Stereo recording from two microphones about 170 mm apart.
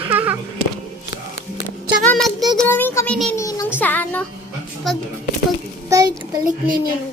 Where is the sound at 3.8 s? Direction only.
10° left (ahead or behind).